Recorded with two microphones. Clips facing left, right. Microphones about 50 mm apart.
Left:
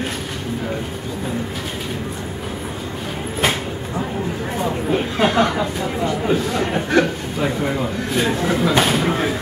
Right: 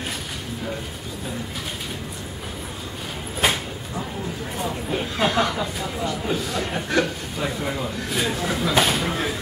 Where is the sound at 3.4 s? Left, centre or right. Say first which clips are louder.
Left 2 dB; centre.